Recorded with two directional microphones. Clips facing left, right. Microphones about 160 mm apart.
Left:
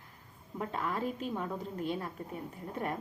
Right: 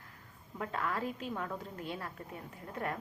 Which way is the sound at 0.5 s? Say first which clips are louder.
Left 1 dB; 15° left (ahead or behind).